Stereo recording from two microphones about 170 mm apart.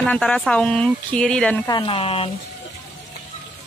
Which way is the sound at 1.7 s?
30° left (ahead or behind).